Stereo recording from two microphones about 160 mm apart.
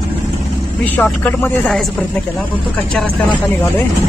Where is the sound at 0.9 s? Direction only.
10° left (ahead or behind).